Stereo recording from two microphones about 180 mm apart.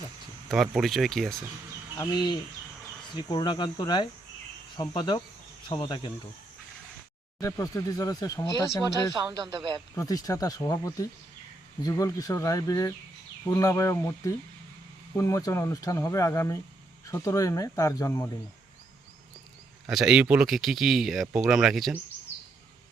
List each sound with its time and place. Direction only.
0.4 s speech: centre (ahead or behind)
2.0 s speech: 25° left (ahead or behind)
7.3 s speech: 20° left (ahead or behind)
9.1 s speech: 25° right (ahead or behind)
9.9 s speech: 20° left (ahead or behind)
19.9 s speech: 5° right (ahead or behind)